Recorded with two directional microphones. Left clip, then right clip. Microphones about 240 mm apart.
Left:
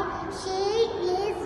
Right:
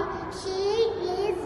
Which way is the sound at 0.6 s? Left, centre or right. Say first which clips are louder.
Even; centre.